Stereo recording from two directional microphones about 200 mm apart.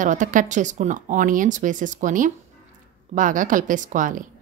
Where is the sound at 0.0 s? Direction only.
40° right (ahead or behind).